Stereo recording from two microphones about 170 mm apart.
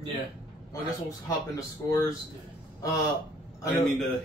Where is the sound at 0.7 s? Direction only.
20° left (ahead or behind).